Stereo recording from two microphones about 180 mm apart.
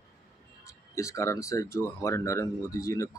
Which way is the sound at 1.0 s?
15° left (ahead or behind).